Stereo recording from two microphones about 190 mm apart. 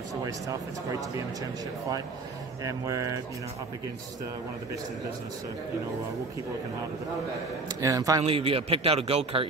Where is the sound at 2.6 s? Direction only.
15° right (ahead or behind).